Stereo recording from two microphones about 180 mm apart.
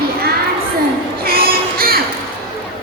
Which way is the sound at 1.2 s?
55° right (ahead or behind).